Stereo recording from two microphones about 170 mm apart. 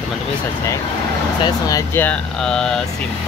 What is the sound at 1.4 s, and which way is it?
Speech, 20° left (ahead or behind).